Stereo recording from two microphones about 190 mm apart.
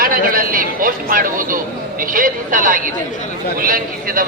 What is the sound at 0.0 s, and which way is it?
A man's voice, 50° right (ahead or behind).